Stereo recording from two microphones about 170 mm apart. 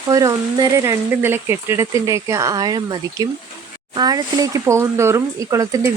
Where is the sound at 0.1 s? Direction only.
20° right (ahead or behind).